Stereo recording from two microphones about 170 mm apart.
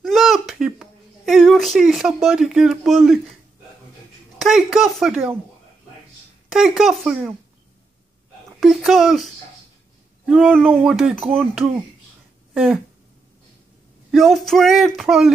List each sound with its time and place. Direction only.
0.0 s speech: centre (ahead or behind)
4.4 s speech: centre (ahead or behind)
6.5 s speech: 5° right (ahead or behind)
8.5 s speech: centre (ahead or behind)
14.1 s speech: centre (ahead or behind)